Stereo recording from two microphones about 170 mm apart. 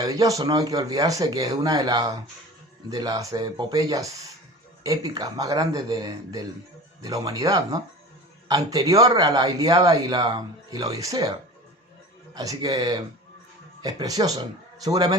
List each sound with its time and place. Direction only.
0.0 s speech: 20° right (ahead or behind)